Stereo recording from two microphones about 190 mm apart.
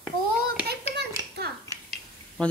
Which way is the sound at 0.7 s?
60° right (ahead or behind).